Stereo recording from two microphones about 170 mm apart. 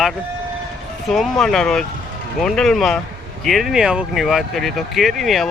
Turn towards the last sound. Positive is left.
turn(degrees=0)  # may be behind; listen again after turning